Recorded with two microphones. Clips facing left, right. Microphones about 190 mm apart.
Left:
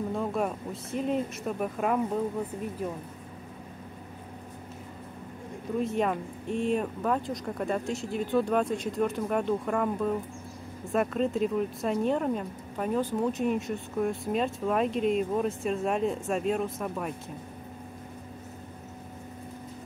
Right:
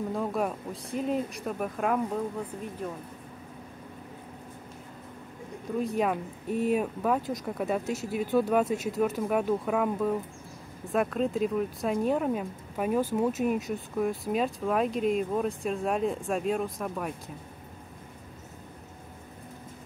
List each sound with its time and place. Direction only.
0.1 s speech: centre (ahead or behind)
5.8 s speech: centre (ahead or behind)